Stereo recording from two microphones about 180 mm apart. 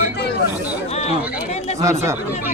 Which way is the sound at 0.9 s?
35° left (ahead or behind).